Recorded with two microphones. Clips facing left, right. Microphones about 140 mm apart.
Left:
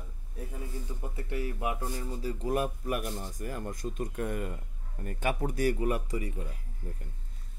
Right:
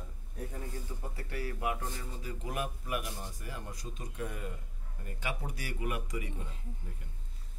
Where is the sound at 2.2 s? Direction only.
35° left (ahead or behind).